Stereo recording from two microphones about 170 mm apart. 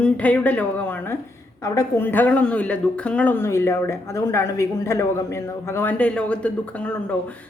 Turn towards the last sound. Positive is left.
turn(degrees=5)  # may be behind; listen again after turning